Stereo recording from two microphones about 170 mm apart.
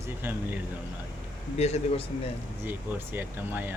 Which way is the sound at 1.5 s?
40° left (ahead or behind).